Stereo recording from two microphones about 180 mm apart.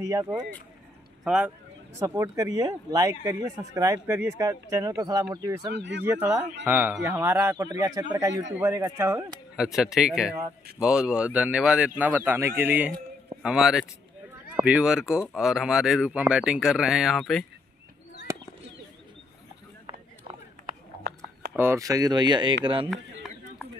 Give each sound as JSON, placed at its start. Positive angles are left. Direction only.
{"t": 0.0, "sound": "speech", "side_deg": -20}
{"t": 1.2, "sound": "speech", "side_deg": -5}
{"t": 2.0, "sound": "speech", "side_deg": -20}
{"t": 5.7, "sound": "speech", "side_deg": -75}
{"t": 6.6, "sound": "a man's voice", "side_deg": -10}
{"t": 9.6, "sound": "a man's voice", "side_deg": -5}
{"t": 21.5, "sound": "speech", "side_deg": -15}